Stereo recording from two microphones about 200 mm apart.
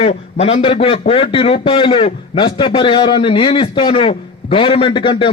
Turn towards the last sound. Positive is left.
turn(degrees=25)  # may be behind; listen again after turning